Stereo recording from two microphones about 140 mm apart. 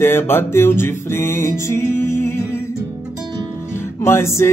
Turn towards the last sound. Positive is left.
turn(degrees=20)  # may be behind; listen again after turning